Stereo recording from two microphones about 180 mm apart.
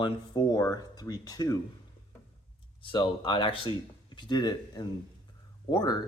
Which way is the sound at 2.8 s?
25° left (ahead or behind).